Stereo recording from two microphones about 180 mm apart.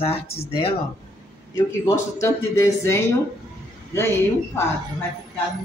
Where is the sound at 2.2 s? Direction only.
15° left (ahead or behind).